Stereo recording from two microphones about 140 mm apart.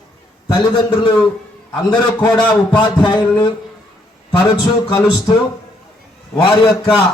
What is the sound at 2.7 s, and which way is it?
Speech, 35° left (ahead or behind).